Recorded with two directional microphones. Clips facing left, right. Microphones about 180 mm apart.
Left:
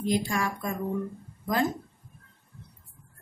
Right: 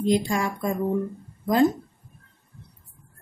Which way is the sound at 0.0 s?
20° right (ahead or behind).